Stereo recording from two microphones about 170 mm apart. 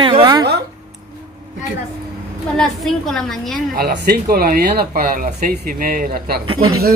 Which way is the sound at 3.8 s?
65° right (ahead or behind).